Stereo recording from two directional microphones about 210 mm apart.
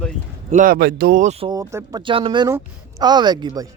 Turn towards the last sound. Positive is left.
turn(degrees=-20)  # may be behind; listen again after turning